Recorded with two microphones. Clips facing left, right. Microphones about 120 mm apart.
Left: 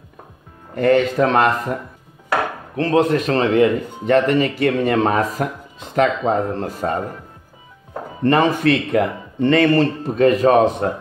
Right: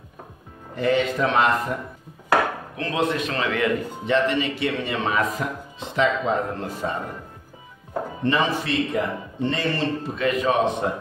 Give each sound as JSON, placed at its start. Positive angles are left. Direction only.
{"t": 0.7, "sound": "speech", "side_deg": 50}
{"t": 2.7, "sound": "speech", "side_deg": 40}
{"t": 3.4, "sound": "speech", "side_deg": 30}
{"t": 4.0, "sound": "a man's voice", "side_deg": 45}
{"t": 6.3, "sound": "speech", "side_deg": 35}
{"t": 8.2, "sound": "a man's voice", "side_deg": 45}